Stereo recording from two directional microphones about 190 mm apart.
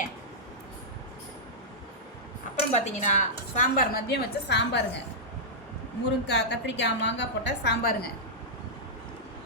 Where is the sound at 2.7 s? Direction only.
35° left (ahead or behind); by 4.8 s 65° left (ahead or behind).